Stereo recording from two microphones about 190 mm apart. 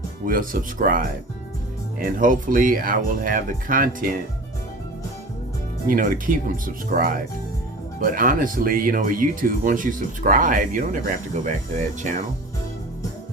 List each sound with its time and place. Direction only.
0.3 s speech: 45° right (ahead or behind)
5.9 s speech: 45° right (ahead or behind)